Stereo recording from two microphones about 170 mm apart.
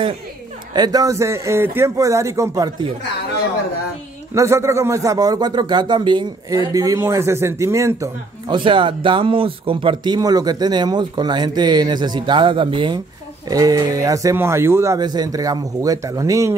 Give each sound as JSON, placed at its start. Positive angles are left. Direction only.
{"t": 0.7, "sound": "a man's voice", "side_deg": -20}
{"t": 4.3, "sound": "speech", "side_deg": -15}
{"t": 8.6, "sound": "speech", "side_deg": -30}